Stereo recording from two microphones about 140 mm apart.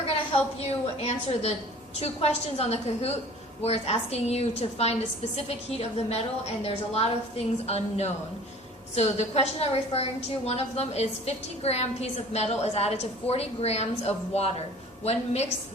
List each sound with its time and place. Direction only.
0.9 s a woman's voice: 50° left (ahead or behind)